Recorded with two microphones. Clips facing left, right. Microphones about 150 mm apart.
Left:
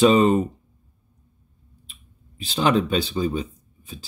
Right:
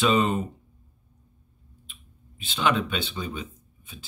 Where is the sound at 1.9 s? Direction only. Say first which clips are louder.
Right 2 dB; 40° left (ahead or behind).